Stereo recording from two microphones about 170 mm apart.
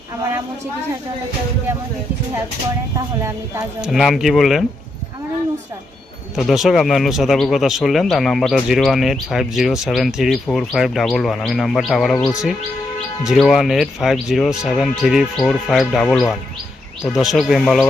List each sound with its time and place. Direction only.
3.8 s speech: centre (ahead or behind)
6.3 s speech: centre (ahead or behind)
13.2 s speech: centre (ahead or behind)